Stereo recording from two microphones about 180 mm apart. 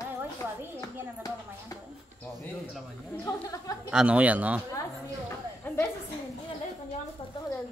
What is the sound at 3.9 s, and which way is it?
Speech, 5° right (ahead or behind).